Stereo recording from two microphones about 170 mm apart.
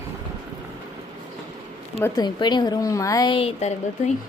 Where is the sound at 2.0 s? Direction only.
25° left (ahead or behind).